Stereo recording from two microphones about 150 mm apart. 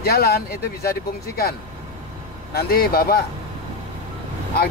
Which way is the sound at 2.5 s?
90° left.